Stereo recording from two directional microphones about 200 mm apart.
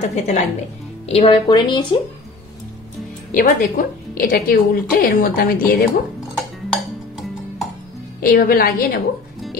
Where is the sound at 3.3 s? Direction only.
45° left (ahead or behind).